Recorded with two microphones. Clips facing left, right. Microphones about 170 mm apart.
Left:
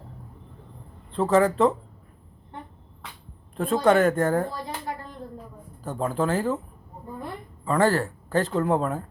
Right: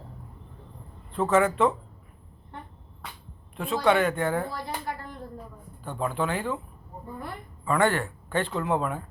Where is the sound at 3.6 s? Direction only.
45° left (ahead or behind).